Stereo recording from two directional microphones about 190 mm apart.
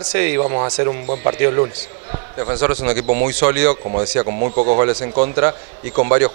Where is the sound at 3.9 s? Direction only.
35° right (ahead or behind).